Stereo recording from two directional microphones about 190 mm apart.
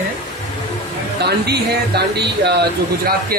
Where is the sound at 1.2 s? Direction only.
60° right (ahead or behind).